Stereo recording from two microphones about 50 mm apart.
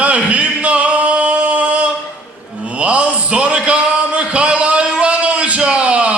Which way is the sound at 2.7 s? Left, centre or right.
Right.